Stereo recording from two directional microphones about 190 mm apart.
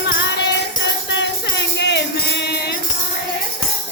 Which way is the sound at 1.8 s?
65° left (ahead or behind).